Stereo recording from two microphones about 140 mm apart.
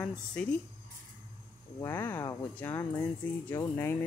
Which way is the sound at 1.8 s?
15° left (ahead or behind).